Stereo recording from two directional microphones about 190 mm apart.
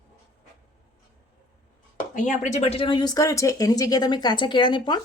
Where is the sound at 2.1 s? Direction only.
40° left (ahead or behind); by 5.0 s 25° left (ahead or behind).